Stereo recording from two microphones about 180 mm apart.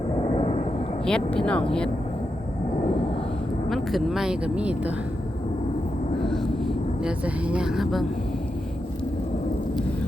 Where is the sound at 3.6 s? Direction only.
Centre (ahead or behind).